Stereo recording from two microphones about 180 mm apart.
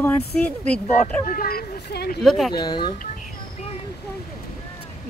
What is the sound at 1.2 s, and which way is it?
Speech, 55° left (ahead or behind).